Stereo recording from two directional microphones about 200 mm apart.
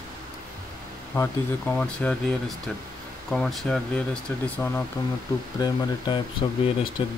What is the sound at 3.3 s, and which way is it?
Speech, centre (ahead or behind).